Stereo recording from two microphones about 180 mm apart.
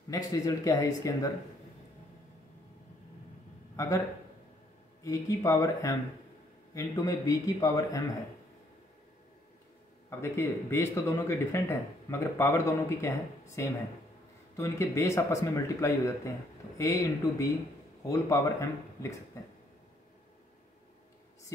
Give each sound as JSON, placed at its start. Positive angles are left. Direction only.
{"t": 0.1, "sound": "a man's voice", "side_deg": 20}
{"t": 3.7, "sound": "a man's voice", "side_deg": 15}
{"t": 5.0, "sound": "a man's voice", "side_deg": 20}
{"t": 10.0, "sound": "speech", "side_deg": 15}